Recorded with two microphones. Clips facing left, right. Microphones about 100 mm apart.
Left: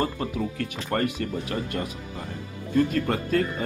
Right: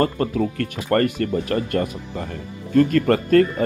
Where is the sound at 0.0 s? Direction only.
55° right (ahead or behind).